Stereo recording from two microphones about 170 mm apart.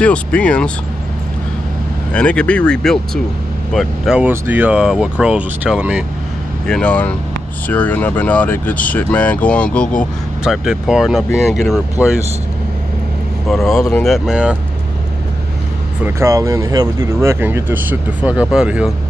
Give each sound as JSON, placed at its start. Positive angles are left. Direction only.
{"t": 0.0, "sound": "speech", "side_deg": 5}
{"t": 2.1, "sound": "speech", "side_deg": 5}
{"t": 6.7, "sound": "speech", "side_deg": 10}
{"t": 13.5, "sound": "speech", "side_deg": 0}
{"t": 16.0, "sound": "speech", "side_deg": -15}